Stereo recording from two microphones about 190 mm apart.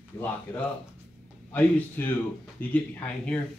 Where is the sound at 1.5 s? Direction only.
10° left (ahead or behind).